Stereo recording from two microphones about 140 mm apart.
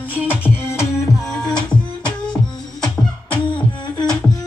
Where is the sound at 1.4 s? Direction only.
5° left (ahead or behind).